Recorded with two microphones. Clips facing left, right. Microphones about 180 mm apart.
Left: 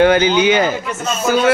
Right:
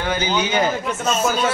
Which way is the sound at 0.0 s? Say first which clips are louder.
Left 10 dB; 70° left (ahead or behind).